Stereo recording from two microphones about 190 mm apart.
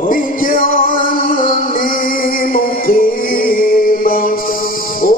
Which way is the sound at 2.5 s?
50° left (ahead or behind).